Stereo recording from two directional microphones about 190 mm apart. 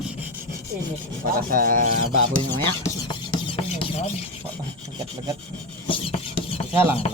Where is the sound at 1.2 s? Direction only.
50° right (ahead or behind).